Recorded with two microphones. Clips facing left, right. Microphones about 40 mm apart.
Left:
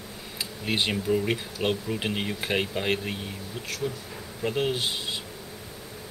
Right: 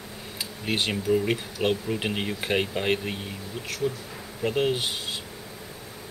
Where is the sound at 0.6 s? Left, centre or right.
Centre.